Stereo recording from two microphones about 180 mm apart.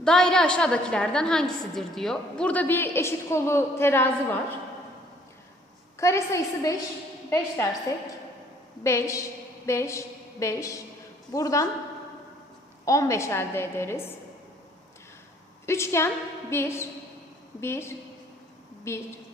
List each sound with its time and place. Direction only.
0.0 s a woman's voice: 5° left (ahead or behind)
6.0 s a woman's voice: 15° left (ahead or behind)
12.8 s a woman's voice: 20° left (ahead or behind)
15.6 s a woman's voice: 15° left (ahead or behind)